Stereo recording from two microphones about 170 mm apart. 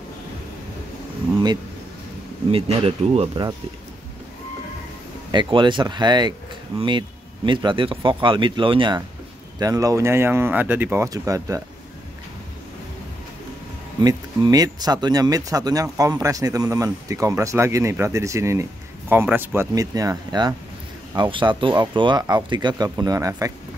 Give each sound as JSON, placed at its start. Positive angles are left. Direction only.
{"t": 2.5, "sound": "speech", "side_deg": -35}
{"t": 5.3, "sound": "a man's voice", "side_deg": -25}
{"t": 14.0, "sound": "a man's voice", "side_deg": -20}